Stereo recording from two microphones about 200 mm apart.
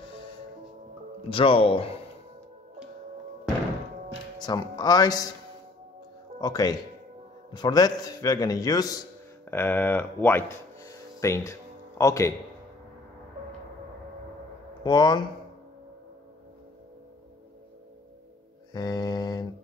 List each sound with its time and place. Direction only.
1.3 s a man's voice: 25° left (ahead or behind)
4.4 s a man's voice: 20° left (ahead or behind)
6.4 s a man's voice: 20° left (ahead or behind)
14.8 s a man's voice: 20° left (ahead or behind)
18.7 s a man's voice: 20° left (ahead or behind)